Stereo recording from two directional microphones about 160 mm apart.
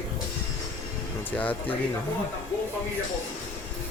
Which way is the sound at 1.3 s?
10° left (ahead or behind).